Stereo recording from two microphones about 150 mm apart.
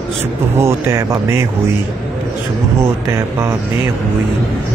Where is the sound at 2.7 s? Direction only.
20° right (ahead or behind).